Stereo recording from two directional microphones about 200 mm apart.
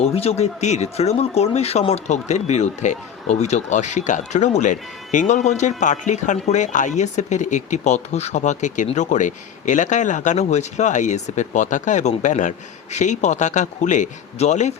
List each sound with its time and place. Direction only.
0.0 s speech: 30° left (ahead or behind)